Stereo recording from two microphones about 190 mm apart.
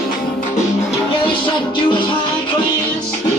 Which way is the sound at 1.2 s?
25° left (ahead or behind).